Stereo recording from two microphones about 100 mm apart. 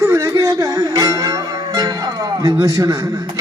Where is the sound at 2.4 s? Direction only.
35° right (ahead or behind).